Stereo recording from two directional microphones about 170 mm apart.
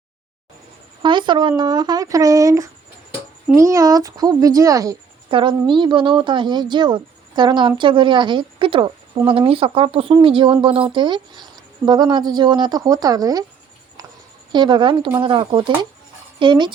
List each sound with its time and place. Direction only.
1.0 s a woman's voice: 25° right (ahead or behind)
14.5 s a woman's voice: 25° right (ahead or behind)